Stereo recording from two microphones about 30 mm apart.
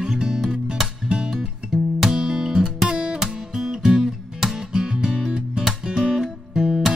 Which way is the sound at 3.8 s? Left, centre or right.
Right.